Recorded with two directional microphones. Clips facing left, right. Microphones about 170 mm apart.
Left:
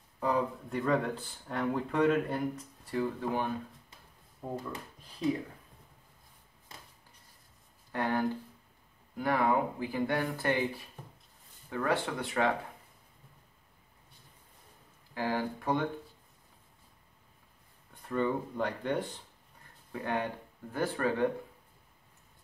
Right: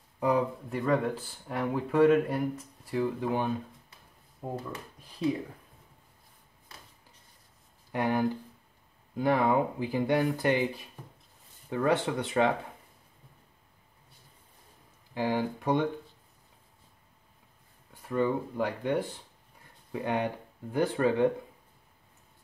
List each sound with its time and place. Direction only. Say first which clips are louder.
0.2 s speech: right 4 dB; 5° right (ahead or behind)
7.9 s speech: right 3 dB; 15° right (ahead or behind)
15.1 s speech: right 3 dB; 15° right (ahead or behind)
17.9 s speech: right 3 dB; 5° right (ahead or behind)
19.9 s speech: right 3 dB; 20° right (ahead or behind)